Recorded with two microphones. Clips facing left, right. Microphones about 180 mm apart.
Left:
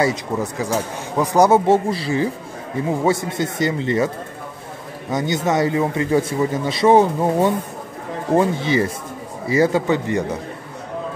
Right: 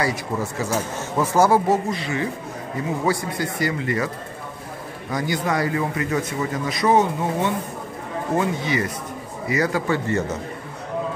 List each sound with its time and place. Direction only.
0.0 s speech: 20° left (ahead or behind)
5.1 s speech: 25° left (ahead or behind)